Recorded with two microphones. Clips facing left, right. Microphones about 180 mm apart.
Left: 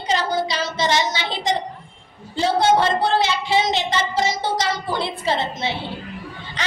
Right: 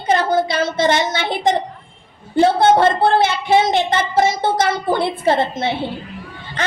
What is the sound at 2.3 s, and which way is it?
A child's voice, 55° right (ahead or behind).